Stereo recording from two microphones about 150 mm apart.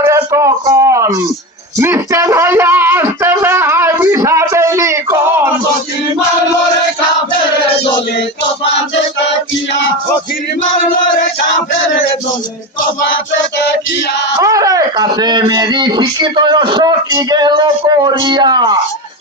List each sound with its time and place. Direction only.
0.0 s a sound: 20° right (ahead or behind)
1.8 s music: 15° right (ahead or behind)
14.4 s speech: 25° right (ahead or behind)